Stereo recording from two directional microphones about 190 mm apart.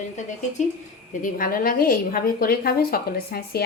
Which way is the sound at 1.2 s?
45° left (ahead or behind).